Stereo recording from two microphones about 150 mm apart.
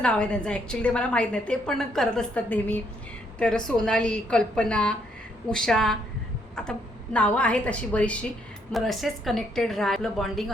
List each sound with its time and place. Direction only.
0.0 s a woman's voice: 5° left (ahead or behind)